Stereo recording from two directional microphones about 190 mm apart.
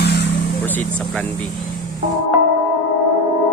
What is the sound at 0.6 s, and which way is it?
Speech, 5° left (ahead or behind).